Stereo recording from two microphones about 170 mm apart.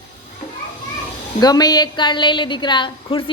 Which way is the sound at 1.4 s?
20° left (ahead or behind).